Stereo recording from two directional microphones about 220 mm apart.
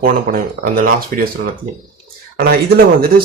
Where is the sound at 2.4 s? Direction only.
45° right (ahead or behind).